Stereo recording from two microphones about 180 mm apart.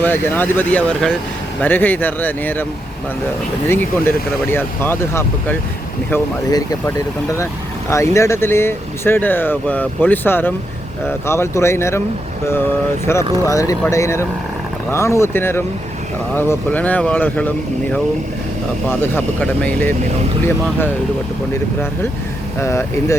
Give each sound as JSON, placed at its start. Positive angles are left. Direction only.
{"t": 0.0, "sound": "speech", "side_deg": 10}
{"t": 3.7, "sound": "speech", "side_deg": 10}
{"t": 13.1, "sound": "speech", "side_deg": 15}
{"t": 18.9, "sound": "speech", "side_deg": 10}
{"t": 22.6, "sound": "speech", "side_deg": 15}